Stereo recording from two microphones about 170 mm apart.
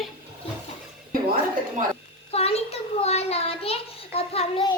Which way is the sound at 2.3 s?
35° left (ahead or behind).